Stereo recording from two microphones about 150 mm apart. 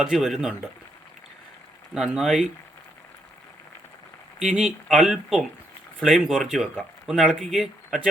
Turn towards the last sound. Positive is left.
turn(degrees=-5)  # may be behind; listen again after turning